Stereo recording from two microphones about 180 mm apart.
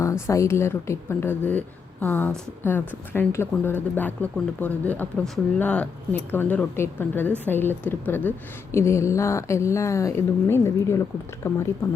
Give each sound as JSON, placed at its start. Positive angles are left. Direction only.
{"t": 0.0, "sound": "speech", "side_deg": 15}